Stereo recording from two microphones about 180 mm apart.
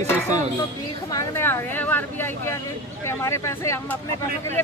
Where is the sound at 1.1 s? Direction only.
15° left (ahead or behind).